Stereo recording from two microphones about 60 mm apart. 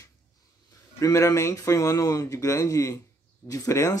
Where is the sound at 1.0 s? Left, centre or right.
Left.